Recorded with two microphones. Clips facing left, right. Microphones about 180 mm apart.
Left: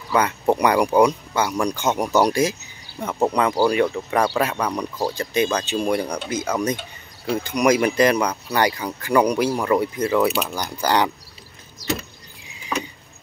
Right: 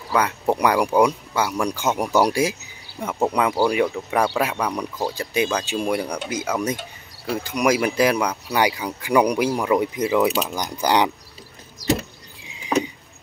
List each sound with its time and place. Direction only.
0.1 s speech: centre (ahead or behind)